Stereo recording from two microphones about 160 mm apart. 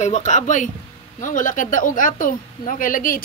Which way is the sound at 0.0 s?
50° left (ahead or behind).